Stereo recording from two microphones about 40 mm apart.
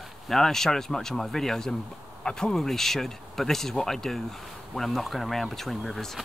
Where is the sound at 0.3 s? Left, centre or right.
Centre.